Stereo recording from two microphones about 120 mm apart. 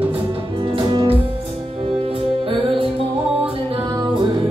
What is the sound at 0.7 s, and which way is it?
Music, 45° right (ahead or behind).